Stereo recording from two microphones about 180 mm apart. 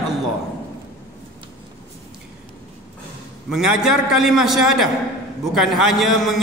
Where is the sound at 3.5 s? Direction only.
5° right (ahead or behind).